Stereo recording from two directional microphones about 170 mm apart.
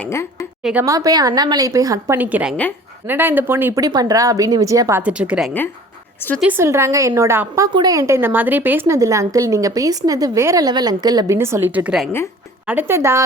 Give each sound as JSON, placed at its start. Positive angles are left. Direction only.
{"t": 0.0, "sound": "a woman's voice", "side_deg": 15}
{"t": 0.6, "sound": "a woman's voice", "side_deg": -10}
{"t": 0.9, "sound": "a woman's voice", "side_deg": -20}